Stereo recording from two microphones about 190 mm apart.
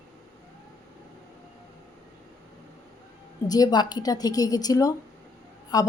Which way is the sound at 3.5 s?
20° left (ahead or behind).